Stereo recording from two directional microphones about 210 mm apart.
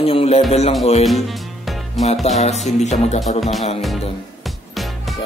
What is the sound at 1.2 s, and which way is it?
Music, centre (ahead or behind).